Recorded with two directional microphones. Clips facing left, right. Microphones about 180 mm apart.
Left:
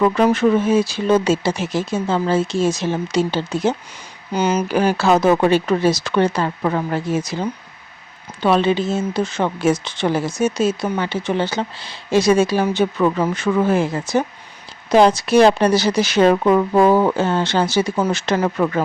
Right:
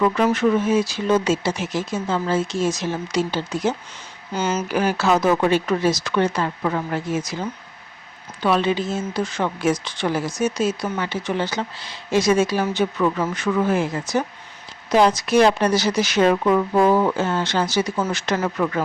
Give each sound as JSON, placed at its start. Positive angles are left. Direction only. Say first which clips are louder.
{"t": 0.0, "sound": "speech", "louder": "left 3 dB", "side_deg": 35}
{"t": 4.3, "sound": "speech", "louder": "left 5 dB", "side_deg": 15}
{"t": 4.7, "sound": "speech", "louder": "left 2 dB", "side_deg": 30}